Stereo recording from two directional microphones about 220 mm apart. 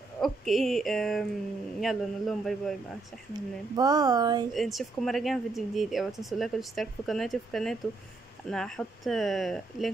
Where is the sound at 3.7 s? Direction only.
15° right (ahead or behind).